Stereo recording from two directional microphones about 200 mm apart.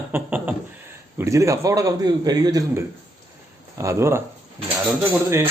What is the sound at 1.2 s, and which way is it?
A man's voice, 15° right (ahead or behind).